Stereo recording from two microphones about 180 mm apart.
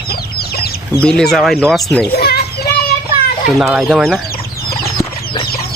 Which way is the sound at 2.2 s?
60° left (ahead or behind).